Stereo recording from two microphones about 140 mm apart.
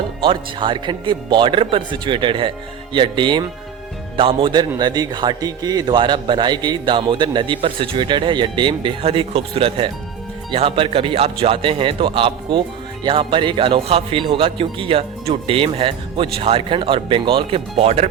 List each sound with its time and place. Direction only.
0.2 s a man's voice: 35° right (ahead or behind)